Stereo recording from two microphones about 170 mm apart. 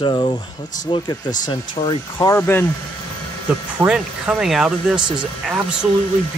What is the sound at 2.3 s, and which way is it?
Speech, 10° left (ahead or behind).